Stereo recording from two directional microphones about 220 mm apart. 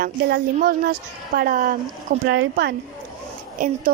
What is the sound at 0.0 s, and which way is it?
A woman's voice, 45° right (ahead or behind).